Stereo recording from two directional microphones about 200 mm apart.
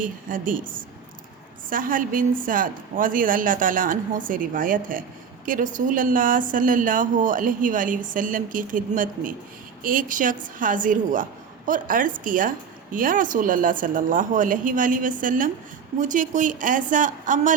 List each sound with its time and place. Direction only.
0.0 s a woman's voice: 45° right (ahead or behind)